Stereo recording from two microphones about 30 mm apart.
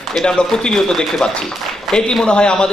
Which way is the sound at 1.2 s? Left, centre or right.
Left.